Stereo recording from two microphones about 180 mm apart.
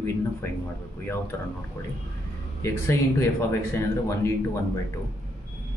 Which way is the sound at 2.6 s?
15° left (ahead or behind).